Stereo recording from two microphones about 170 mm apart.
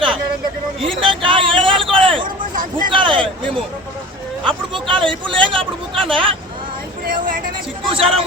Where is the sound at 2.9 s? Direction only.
30° right (ahead or behind).